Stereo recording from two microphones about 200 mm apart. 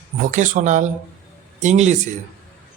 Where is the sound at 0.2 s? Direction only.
40° right (ahead or behind).